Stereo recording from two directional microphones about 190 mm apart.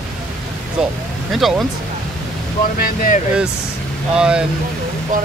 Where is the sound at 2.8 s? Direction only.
50° left (ahead or behind).